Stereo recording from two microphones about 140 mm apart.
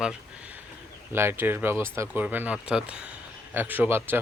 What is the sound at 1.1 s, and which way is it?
Speech, 15° right (ahead or behind).